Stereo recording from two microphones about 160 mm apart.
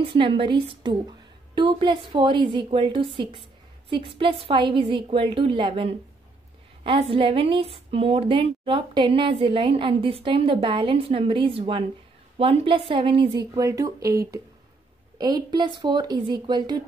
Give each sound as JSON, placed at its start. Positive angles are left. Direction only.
{"t": 0.0, "sound": "a woman's voice", "side_deg": -30}
{"t": 13.3, "sound": "a woman's voice", "side_deg": -20}
{"t": 15.1, "sound": "a woman's voice", "side_deg": -25}